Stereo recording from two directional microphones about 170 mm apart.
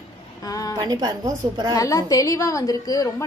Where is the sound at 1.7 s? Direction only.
20° left (ahead or behind).